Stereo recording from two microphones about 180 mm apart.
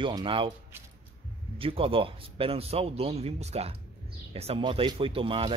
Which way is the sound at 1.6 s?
30° right (ahead or behind).